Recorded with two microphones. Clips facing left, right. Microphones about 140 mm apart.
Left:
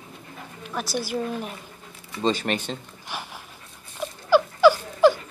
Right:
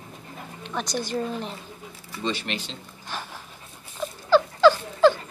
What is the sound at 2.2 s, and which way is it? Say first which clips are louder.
Speech: left 6 dB; 45° left (ahead or behind).